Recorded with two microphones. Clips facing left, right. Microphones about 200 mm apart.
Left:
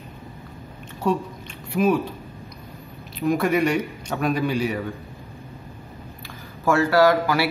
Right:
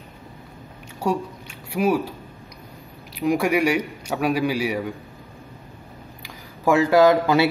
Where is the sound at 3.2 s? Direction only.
10° right (ahead or behind).